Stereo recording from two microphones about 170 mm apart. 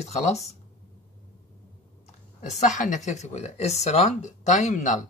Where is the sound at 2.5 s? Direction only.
45° left (ahead or behind).